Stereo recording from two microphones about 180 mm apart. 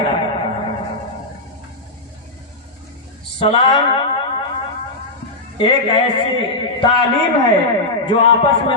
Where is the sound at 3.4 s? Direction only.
30° left (ahead or behind).